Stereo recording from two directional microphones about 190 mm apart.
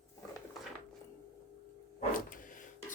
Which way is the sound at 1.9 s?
45° left (ahead or behind).